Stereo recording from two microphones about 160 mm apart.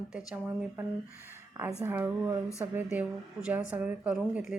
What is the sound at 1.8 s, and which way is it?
A woman's voice, 15° right (ahead or behind).